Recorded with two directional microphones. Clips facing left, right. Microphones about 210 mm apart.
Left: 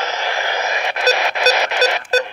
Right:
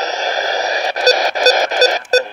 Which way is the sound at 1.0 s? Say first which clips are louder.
Right 4 dB; 40° right (ahead or behind).